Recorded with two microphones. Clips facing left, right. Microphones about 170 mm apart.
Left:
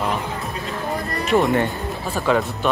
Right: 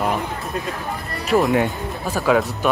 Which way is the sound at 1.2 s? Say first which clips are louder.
Right 1 dB; centre (ahead or behind).